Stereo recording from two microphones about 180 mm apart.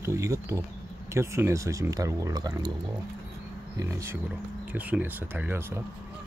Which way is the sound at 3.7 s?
15° right (ahead or behind).